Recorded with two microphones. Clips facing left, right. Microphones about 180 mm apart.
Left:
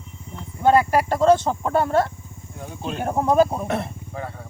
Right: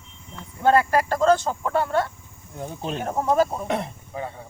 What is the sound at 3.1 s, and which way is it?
Speech, 15° left (ahead or behind).